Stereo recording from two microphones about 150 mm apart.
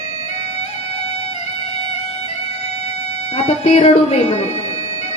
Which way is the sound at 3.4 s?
45° left (ahead or behind).